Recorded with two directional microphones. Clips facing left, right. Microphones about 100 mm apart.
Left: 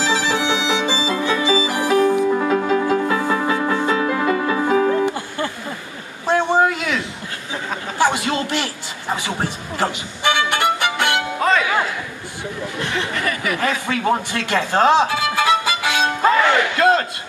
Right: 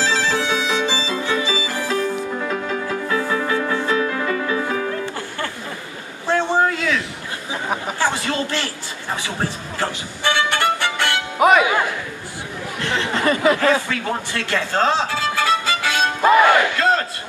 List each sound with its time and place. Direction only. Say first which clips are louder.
0.0 s violin: left 1 dB; 15° left (ahead or behind)
6.2 s a sound: left 2 dB; 15° left (ahead or behind)
8.0 s a sound: left 5 dB; 15° left (ahead or behind)
9.8 s violin: left 3 dB; 15° left (ahead or behind)
11.3 s music: right 7 dB; 15° right (ahead or behind)
13.1 s a sound: right 6 dB; 25° right (ahead or behind)
13.8 s music: left 5 dB; 20° left (ahead or behind)
16.3 s battle cry: right 3 dB; 15° right (ahead or behind)
16.7 s battle cry: left 3 dB; 20° left (ahead or behind)